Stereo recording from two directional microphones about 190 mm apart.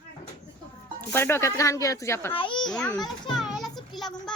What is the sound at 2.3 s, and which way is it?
Speech, 25° left (ahead or behind).